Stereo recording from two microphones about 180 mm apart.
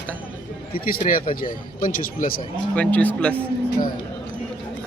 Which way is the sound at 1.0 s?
50° left (ahead or behind).